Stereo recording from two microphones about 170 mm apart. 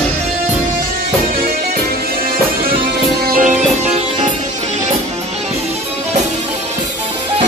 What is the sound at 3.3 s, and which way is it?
Music, 55° right (ahead or behind).